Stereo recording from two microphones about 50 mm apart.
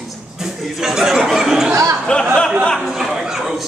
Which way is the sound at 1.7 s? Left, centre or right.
Right.